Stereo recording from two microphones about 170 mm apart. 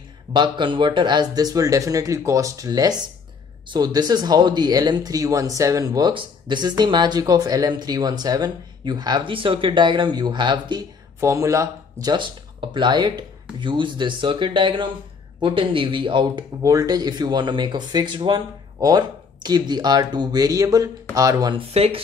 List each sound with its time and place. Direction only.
0.3 s speech: 25° right (ahead or behind)